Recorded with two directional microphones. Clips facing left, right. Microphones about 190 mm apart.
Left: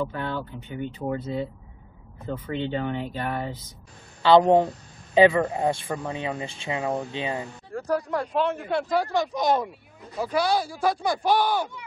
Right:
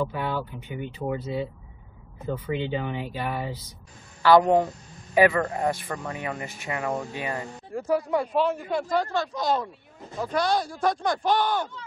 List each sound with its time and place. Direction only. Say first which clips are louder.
0.0 s speech: right 1 dB; 10° right (ahead or behind)
2.5 s speech: left 2 dB; 10° right (ahead or behind)
4.2 s a man's voice: left 1 dB; 20° left (ahead or behind)
7.7 s speech: right 2 dB; 5° right (ahead or behind); by 9.7 s 20° left (ahead or behind)
10.2 s speech: left 1 dB; 5° left (ahead or behind)